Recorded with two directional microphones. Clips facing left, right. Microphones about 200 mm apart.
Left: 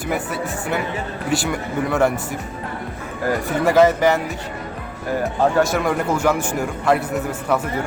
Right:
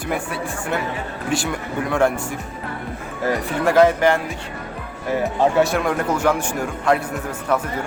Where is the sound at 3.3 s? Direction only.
5° left (ahead or behind).